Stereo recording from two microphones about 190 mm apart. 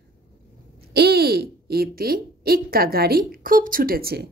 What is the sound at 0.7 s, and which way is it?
Speech, 55° right (ahead or behind).